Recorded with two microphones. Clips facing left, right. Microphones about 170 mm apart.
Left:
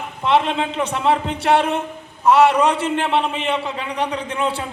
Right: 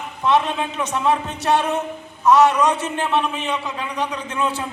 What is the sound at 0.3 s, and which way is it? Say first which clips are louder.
A man's voice: left 1 dB; 30° left (ahead or behind).